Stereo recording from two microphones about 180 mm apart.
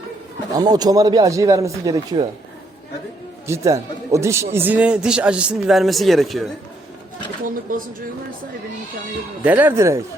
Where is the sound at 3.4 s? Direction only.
15° right (ahead or behind); by 6.4 s centre (ahead or behind).